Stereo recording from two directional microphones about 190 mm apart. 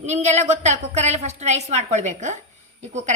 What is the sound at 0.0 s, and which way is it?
A woman's voice, 35° right (ahead or behind).